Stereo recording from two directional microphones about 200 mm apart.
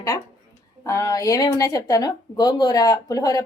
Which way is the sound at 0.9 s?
15° left (ahead or behind).